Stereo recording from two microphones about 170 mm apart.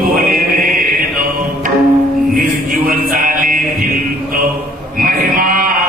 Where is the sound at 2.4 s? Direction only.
55° right (ahead or behind).